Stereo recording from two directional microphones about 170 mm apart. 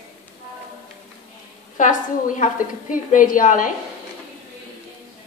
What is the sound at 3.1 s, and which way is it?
Speech, 50° left (ahead or behind).